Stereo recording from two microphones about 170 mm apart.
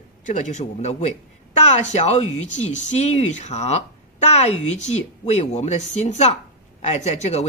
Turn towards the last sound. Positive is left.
turn(degrees=40)  # may be behind; listen again after turning